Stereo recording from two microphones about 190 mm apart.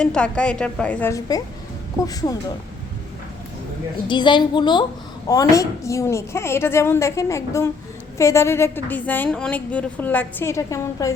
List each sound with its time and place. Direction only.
0.0 s a woman's voice: 5° left (ahead or behind); by 2.4 s 20° left (ahead or behind)
4.1 s a woman's voice: 25° left (ahead or behind)